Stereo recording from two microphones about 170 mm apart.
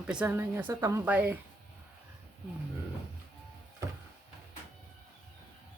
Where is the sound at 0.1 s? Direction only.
10° right (ahead or behind).